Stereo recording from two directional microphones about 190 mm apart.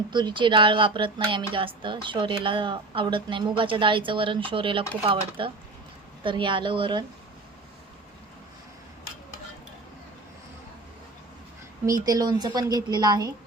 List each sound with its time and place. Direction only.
0.1 s speech: 25° right (ahead or behind)
11.9 s speech: 20° right (ahead or behind)